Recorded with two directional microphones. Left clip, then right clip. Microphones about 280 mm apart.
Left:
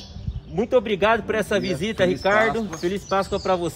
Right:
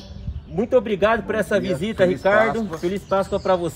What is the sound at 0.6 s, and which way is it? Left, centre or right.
A man's voice, centre.